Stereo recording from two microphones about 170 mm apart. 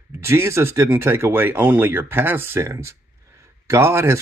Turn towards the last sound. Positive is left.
turn(degrees=-15)  # may be behind; listen again after turning